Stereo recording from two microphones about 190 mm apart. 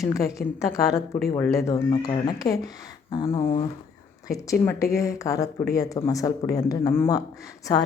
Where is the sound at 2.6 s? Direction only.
20° left (ahead or behind).